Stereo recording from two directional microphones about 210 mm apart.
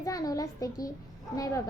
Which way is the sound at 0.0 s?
15° left (ahead or behind).